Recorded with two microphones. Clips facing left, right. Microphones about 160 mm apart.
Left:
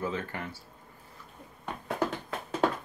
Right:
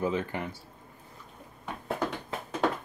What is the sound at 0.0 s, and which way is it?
Speech, 20° right (ahead or behind).